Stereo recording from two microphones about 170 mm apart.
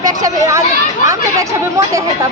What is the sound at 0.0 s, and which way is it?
Speech, 20° right (ahead or behind).